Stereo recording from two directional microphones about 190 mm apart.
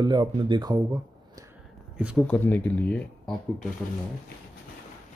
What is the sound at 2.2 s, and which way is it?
Speech, 10° left (ahead or behind).